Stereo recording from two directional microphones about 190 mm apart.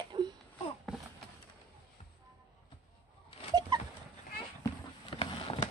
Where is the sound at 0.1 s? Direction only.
20° right (ahead or behind).